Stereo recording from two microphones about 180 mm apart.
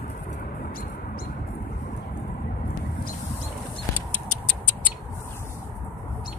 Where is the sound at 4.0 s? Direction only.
10° left (ahead or behind).